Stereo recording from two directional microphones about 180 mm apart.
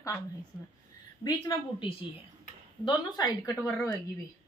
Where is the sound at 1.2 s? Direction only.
25° left (ahead or behind).